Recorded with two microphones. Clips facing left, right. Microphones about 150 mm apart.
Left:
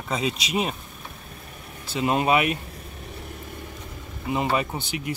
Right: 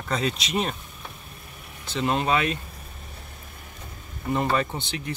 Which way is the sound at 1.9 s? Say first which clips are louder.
Left 2 dB; 10° left (ahead or behind).